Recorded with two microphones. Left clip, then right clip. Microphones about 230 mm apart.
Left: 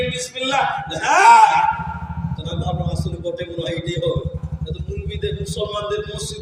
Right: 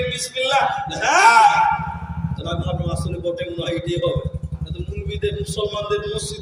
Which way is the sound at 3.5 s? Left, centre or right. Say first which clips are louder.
Right 1 dB; centre.